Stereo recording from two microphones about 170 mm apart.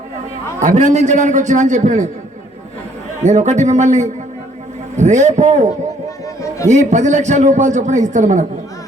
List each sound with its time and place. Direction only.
0.6 s a man's voice: 45° right (ahead or behind)
3.2 s a man's voice: 45° right (ahead or behind)